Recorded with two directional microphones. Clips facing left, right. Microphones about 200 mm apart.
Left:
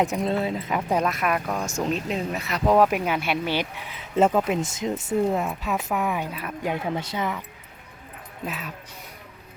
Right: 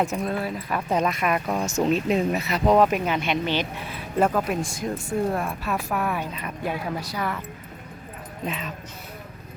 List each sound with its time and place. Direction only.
0.0 s speech: 15° left (ahead or behind)
0.8 s speech: 10° left (ahead or behind)
1.5 s speech: 20° right (ahead or behind)
1.8 s speech: 5° right (ahead or behind); by 6.7 s 15° left (ahead or behind)
6.9 s speech: 25° left (ahead or behind)
8.4 s speech: 5° left (ahead or behind)